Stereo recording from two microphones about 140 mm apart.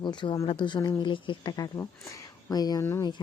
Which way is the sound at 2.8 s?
20° left (ahead or behind).